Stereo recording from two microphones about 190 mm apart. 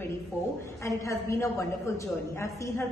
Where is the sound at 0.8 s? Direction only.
15° left (ahead or behind).